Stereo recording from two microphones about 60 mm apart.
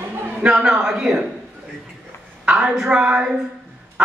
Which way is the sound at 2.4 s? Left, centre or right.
Centre.